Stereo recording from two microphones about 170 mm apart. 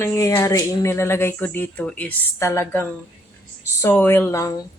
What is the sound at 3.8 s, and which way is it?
Speech, 15° left (ahead or behind).